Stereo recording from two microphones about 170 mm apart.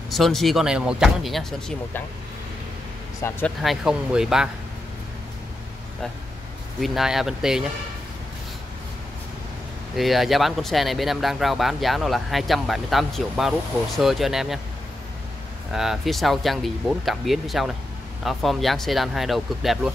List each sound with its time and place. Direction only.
0.1 s speech: centre (ahead or behind)
3.3 s speech: 15° left (ahead or behind)
3.6 s speech: 5° right (ahead or behind)
6.8 s speech: centre (ahead or behind)
9.9 s speech: centre (ahead or behind)
15.7 s speech: centre (ahead or behind)